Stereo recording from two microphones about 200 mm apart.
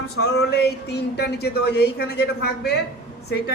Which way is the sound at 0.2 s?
55° left (ahead or behind).